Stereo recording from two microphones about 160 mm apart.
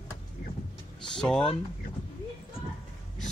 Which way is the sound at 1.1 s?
5° left (ahead or behind).